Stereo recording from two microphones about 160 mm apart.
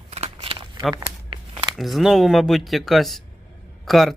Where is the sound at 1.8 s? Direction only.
Centre (ahead or behind).